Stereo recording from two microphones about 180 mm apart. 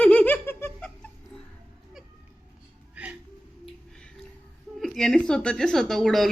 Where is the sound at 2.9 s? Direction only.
10° right (ahead or behind).